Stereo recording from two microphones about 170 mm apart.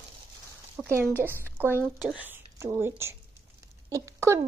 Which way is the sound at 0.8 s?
Centre (ahead or behind).